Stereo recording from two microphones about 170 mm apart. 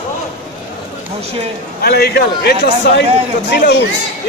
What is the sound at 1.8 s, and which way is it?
A man's voice, 70° left (ahead or behind).